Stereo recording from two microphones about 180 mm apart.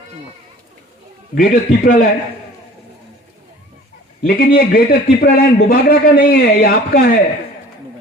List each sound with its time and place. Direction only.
1.4 s a man's voice: 55° left (ahead or behind)
4.2 s a man's voice: 55° left (ahead or behind)